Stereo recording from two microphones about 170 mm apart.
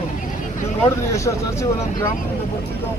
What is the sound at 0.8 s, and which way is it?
Speech, 15° left (ahead or behind).